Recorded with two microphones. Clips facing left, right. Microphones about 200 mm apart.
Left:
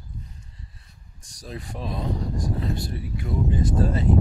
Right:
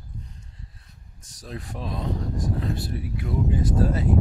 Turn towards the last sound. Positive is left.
turn(degrees=-5)  # may be behind; listen again after turning